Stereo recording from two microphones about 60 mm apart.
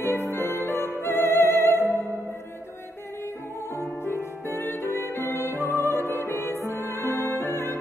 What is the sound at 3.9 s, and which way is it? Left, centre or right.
Music, left.